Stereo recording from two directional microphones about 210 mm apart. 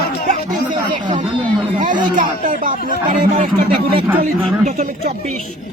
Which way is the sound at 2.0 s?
40° right (ahead or behind).